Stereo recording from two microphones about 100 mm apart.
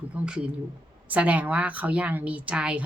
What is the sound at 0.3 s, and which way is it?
A woman's voice, 10° right (ahead or behind).